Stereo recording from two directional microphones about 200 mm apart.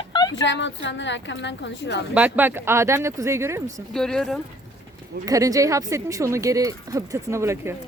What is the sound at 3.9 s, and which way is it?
Speech, centre (ahead or behind).